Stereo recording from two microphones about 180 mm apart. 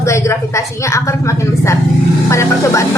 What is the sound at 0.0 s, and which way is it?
A woman's voice, 15° left (ahead or behind).